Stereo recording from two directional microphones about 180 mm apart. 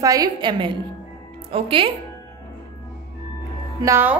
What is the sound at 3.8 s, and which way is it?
Speech, 15° right (ahead or behind).